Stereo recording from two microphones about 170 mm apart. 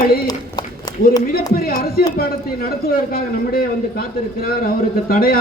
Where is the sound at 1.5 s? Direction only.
60° left (ahead or behind).